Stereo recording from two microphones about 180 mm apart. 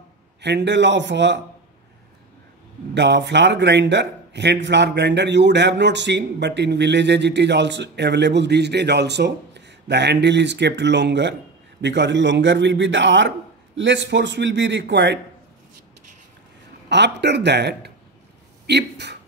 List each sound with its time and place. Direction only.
0.4 s a man's voice: 70° right (ahead or behind)
2.9 s a man's voice: 75° right (ahead or behind)
16.9 s a man's voice: 70° right (ahead or behind)